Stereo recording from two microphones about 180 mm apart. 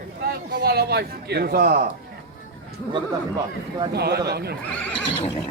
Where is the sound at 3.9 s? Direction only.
65° right (ahead or behind).